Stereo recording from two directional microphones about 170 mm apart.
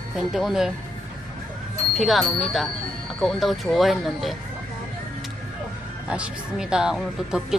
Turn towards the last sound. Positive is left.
turn(degrees=-5)  # may be behind; listen again after turning